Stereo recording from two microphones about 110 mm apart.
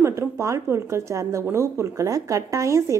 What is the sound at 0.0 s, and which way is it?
Speech, 25° right (ahead or behind).